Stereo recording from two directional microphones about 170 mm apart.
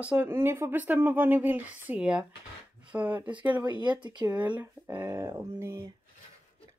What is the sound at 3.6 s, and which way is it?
Speech, 25° right (ahead or behind).